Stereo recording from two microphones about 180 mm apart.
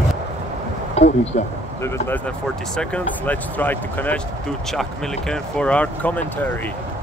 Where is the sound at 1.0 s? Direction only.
35° left (ahead or behind).